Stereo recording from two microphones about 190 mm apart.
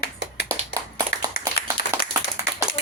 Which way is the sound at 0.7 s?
20° right (ahead or behind).